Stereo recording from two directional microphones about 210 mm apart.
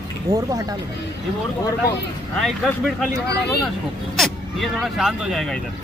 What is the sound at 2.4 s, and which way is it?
Speech, centre (ahead or behind).